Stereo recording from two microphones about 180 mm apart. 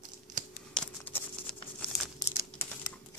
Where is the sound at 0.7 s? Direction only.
5° left (ahead or behind).